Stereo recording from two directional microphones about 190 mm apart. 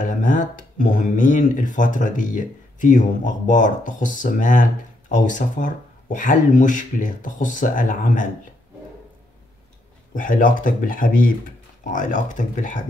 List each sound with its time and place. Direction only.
0.0 s speech: 45° left (ahead or behind)
10.1 s speech: 45° left (ahead or behind)